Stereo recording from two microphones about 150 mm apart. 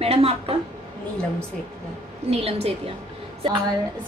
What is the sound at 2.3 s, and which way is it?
Speech, 40° right (ahead or behind).